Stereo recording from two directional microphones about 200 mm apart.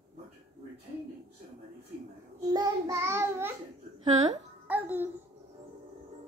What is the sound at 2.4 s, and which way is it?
Child singing, 20° right (ahead or behind).